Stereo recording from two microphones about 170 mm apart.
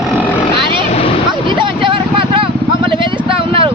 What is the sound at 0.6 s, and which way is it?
Vehicle, 30° right (ahead or behind).